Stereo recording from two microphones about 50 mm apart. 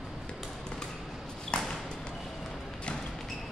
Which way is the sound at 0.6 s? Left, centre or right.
Centre.